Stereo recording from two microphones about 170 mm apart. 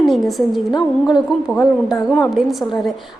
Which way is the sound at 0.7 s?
25° left (ahead or behind).